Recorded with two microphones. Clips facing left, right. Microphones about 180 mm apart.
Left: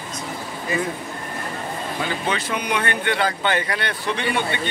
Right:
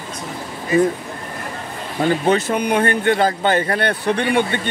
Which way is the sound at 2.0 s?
45° right (ahead or behind).